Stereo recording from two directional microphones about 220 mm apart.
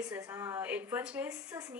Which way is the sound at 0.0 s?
10° right (ahead or behind).